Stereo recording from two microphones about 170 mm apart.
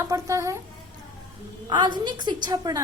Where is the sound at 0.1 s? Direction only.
20° right (ahead or behind).